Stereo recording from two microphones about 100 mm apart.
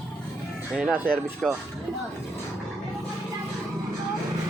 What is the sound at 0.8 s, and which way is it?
Speech, 15° right (ahead or behind).